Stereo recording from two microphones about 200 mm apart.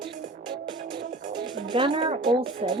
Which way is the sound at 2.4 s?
25° right (ahead or behind).